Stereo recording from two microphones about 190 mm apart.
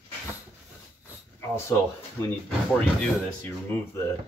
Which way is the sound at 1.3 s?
15° left (ahead or behind).